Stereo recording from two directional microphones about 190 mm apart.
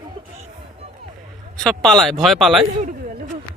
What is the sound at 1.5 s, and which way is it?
A man's voice, centre (ahead or behind).